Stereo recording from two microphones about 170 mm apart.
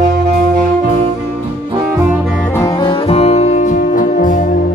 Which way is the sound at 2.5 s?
20° left (ahead or behind).